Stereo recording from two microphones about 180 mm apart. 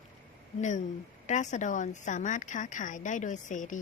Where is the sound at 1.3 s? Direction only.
40° left (ahead or behind).